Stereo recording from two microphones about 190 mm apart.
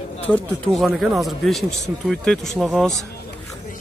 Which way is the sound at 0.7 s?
Centre (ahead or behind).